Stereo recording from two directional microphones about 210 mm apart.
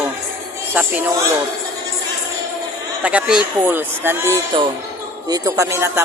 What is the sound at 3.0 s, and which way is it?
A man's voice, 5° right (ahead or behind).